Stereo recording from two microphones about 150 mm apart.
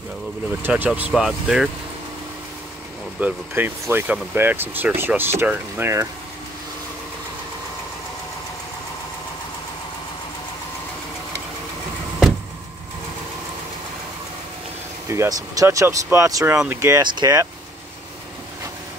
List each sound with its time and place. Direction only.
0.6 s speech: 10° right (ahead or behind)
3.2 s speech: 10° right (ahead or behind)
15.0 s speech: 20° right (ahead or behind)